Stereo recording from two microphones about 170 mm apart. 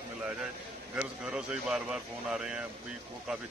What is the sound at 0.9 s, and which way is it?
Speech, 5° right (ahead or behind).